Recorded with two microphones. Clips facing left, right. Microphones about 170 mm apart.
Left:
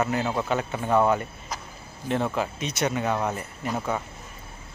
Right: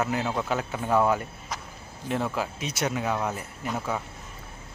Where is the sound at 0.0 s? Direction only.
5° right (ahead or behind).